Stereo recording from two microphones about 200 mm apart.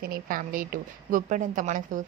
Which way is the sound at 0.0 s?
45° right (ahead or behind).